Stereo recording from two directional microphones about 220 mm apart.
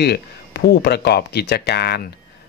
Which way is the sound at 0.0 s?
50° left (ahead or behind).